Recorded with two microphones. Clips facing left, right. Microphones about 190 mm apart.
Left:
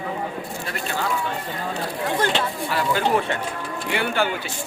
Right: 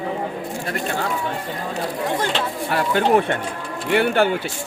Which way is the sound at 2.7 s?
55° right (ahead or behind).